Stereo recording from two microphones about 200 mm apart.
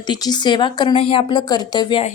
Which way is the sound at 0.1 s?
20° left (ahead or behind).